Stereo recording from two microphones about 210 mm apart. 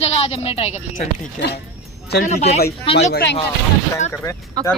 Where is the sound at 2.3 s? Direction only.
30° left (ahead or behind).